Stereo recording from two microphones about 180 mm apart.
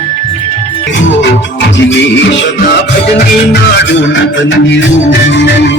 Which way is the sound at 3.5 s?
80° left.